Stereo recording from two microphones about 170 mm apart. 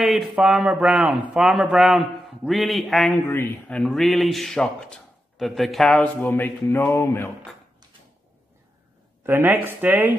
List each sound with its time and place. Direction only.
0.0 s speech: centre (ahead or behind)
3.3 s speech: 15° left (ahead or behind)
9.2 s speech: 15° right (ahead or behind)